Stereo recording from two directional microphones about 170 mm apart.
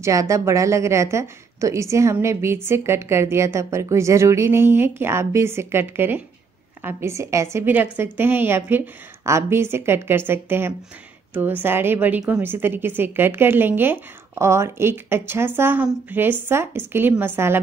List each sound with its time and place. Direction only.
0.0 s a woman's voice: 20° right (ahead or behind)